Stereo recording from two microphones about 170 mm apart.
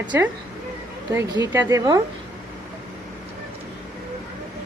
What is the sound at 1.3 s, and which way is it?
Speech, 25° right (ahead or behind).